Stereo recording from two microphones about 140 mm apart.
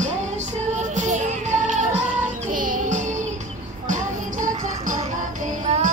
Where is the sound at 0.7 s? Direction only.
60° right (ahead or behind).